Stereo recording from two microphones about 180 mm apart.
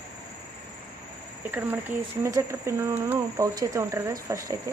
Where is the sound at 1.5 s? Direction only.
10° right (ahead or behind).